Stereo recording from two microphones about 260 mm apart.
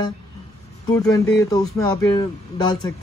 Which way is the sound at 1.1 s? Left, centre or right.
Centre.